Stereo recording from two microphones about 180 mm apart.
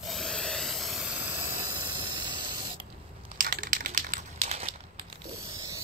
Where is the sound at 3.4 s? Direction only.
50° right (ahead or behind).